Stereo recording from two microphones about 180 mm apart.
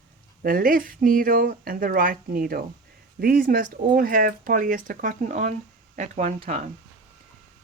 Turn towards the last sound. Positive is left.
turn(degrees=-40)  # may be behind; listen again after turning